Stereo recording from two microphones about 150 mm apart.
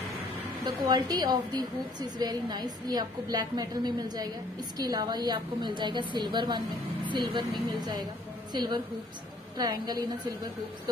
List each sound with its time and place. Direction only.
0.7 s a woman's voice: 25° right (ahead or behind)